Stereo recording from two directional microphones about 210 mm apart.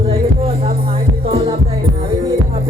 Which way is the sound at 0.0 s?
25° right (ahead or behind).